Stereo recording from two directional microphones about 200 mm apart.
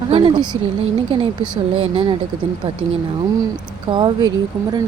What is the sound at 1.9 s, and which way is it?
Speech, 30° right (ahead or behind).